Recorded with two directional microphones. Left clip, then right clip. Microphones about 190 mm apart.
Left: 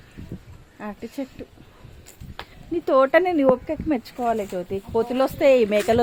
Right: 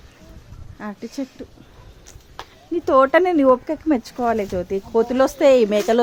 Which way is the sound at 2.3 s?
Centre (ahead or behind).